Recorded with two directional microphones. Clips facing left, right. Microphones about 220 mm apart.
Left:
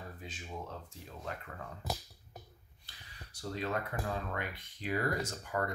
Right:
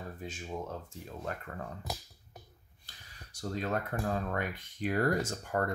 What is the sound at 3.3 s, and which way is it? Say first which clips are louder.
Speech: right 2 dB; 45° right (ahead or behind).